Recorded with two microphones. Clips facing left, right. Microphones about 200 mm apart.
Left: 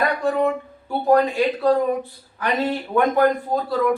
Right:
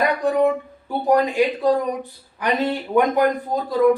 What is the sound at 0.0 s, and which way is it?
Speech, 15° right (ahead or behind).